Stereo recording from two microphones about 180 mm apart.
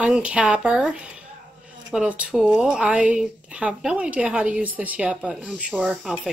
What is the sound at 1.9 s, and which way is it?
A woman's voice, 5° right (ahead or behind).